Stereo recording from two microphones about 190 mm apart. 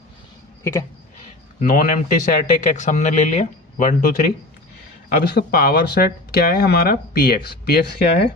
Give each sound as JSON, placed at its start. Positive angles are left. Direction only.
{"t": 0.6, "sound": "speech", "side_deg": 15}
{"t": 1.6, "sound": "speech", "side_deg": 45}
{"t": 5.2, "sound": "speech", "side_deg": 55}